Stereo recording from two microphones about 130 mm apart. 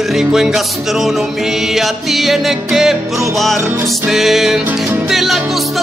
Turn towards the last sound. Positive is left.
turn(degrees=0)  # may be behind; listen again after turning